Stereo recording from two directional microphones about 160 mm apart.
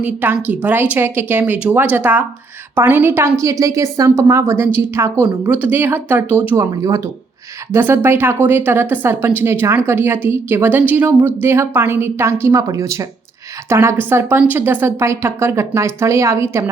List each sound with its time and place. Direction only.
0.0 s a woman's voice: 10° right (ahead or behind)